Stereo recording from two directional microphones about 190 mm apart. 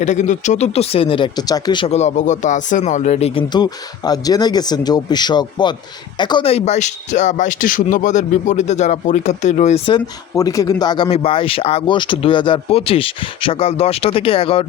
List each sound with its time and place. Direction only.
0.0 s speech: 40° left (ahead or behind)